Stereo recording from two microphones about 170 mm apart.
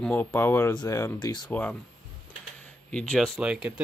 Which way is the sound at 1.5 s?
10° left (ahead or behind).